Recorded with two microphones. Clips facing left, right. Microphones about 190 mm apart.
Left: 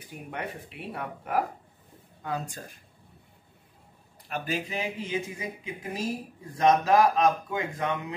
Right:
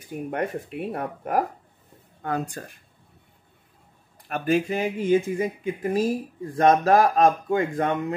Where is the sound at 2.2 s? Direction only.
60° right (ahead or behind).